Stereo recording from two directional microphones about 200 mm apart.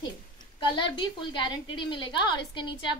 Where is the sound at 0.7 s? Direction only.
25° left (ahead or behind).